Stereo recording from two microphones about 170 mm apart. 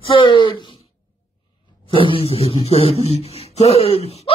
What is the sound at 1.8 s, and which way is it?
A woman's voice, 30° left (ahead or behind).